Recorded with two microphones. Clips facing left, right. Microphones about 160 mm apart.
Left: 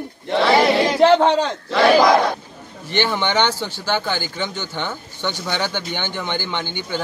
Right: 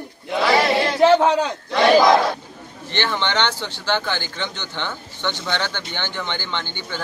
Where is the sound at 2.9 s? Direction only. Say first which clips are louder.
Left 3 dB; 10° left (ahead or behind).